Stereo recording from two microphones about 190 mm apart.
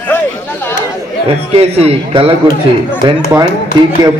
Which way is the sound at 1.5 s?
30° right (ahead or behind).